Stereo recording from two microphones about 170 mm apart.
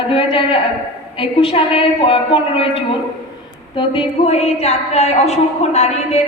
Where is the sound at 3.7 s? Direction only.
30° left (ahead or behind).